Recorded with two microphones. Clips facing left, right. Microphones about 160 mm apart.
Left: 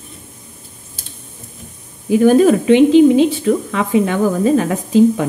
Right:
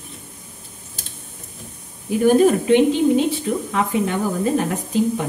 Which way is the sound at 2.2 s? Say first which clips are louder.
Left 3 dB; 90° left.